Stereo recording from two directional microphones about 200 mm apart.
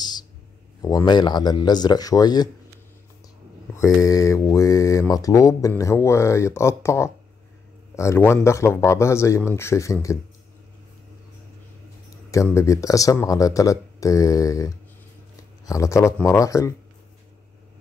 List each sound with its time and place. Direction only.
0.8 s a man's voice: 20° left (ahead or behind)
3.7 s speech: 15° left (ahead or behind)
12.3 s speech: 15° left (ahead or behind)